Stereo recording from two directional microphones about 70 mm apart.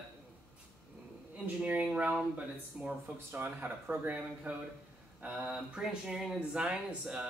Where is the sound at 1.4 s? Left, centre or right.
Centre.